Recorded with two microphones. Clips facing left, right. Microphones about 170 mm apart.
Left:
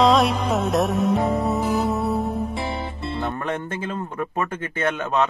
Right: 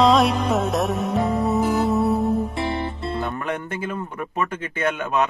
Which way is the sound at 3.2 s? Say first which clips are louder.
Even; 30° left (ahead or behind).